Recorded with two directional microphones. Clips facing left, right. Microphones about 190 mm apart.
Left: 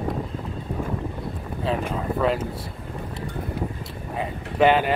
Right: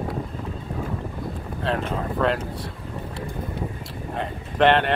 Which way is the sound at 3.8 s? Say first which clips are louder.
Even; 5° left (ahead or behind).